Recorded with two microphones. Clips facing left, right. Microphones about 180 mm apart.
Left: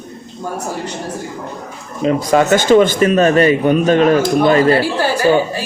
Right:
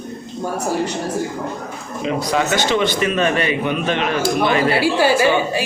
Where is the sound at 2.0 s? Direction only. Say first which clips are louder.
Left 6 dB; 50° left (ahead or behind).